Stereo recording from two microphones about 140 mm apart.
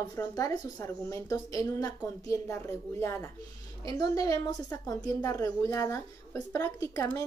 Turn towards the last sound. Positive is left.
turn(degrees=20)  # may be behind; listen again after turning